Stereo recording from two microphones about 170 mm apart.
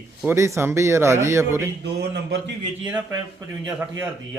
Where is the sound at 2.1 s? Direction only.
90° right.